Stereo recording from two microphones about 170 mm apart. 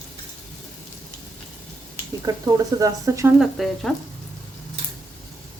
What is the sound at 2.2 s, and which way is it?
Speech, 20° right (ahead or behind).